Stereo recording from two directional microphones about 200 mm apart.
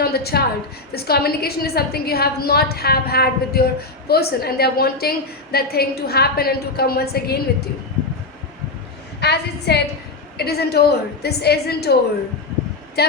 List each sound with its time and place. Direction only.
0.0 s a woman's voice: 50° left (ahead or behind)
9.2 s a woman's voice: 55° left (ahead or behind)
13.0 s speech: 55° left (ahead or behind)